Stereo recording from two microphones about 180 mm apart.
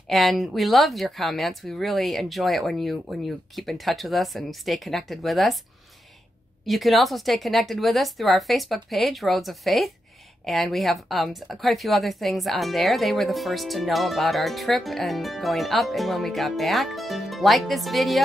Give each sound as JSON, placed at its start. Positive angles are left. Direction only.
{"t": 0.1, "sound": "a woman's voice", "side_deg": 0}
{"t": 6.6, "sound": "a woman's voice", "side_deg": 0}